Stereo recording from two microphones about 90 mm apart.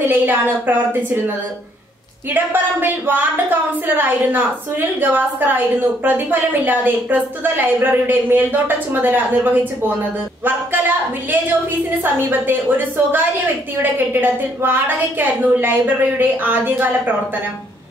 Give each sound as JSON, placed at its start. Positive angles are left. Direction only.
{"t": 0.1, "sound": "a woman's voice", "side_deg": -20}
{"t": 2.3, "sound": "a woman's voice", "side_deg": -20}
{"t": 12.0, "sound": "a woman's voice", "side_deg": -20}